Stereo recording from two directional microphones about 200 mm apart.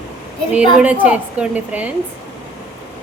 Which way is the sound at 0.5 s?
5° right (ahead or behind).